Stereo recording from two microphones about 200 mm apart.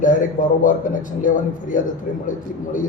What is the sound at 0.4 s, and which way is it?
Speech, 40° left (ahead or behind).